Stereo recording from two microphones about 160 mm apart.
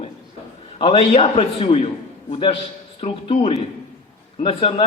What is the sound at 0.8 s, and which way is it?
A man's voice, 35° left (ahead or behind).